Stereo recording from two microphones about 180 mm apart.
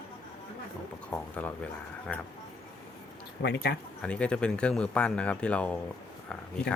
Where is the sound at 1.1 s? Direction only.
10° left (ahead or behind).